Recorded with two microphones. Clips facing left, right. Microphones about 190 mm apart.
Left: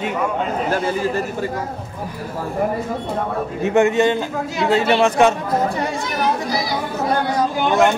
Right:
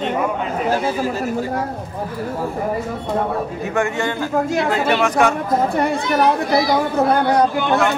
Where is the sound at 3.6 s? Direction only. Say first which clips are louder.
Left 8 dB; 20° left (ahead or behind).